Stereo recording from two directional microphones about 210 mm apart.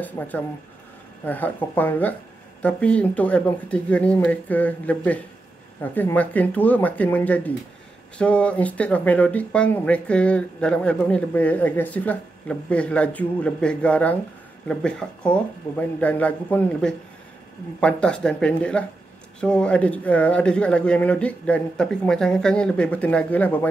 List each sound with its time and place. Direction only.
0.2 s speech: 10° left (ahead or behind)